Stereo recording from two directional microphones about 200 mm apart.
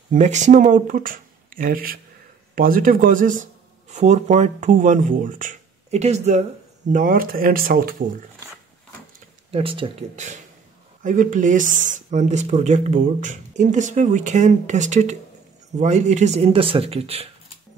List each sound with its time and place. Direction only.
0.1 s speech: 35° right (ahead or behind)
9.5 s speech: 25° right (ahead or behind)